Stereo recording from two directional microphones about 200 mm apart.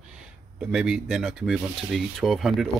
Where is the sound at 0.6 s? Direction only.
5° right (ahead or behind).